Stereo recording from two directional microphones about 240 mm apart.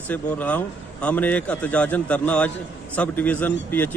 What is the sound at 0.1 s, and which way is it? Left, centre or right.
A man's voice, centre.